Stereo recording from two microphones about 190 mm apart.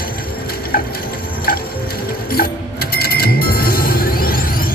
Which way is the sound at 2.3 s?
55° left (ahead or behind).